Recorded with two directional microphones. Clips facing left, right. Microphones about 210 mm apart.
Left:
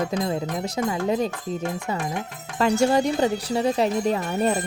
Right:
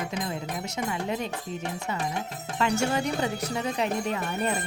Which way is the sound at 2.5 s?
35° left (ahead or behind).